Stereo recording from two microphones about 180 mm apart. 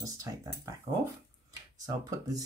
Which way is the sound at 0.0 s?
20° right (ahead or behind).